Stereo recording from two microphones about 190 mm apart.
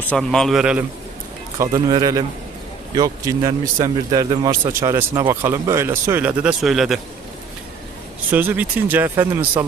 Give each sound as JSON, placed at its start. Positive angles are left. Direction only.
{"t": 0.1, "sound": "a man's voice", "side_deg": 5}
{"t": 1.5, "sound": "speech", "side_deg": -15}
{"t": 8.3, "sound": "speech", "side_deg": -10}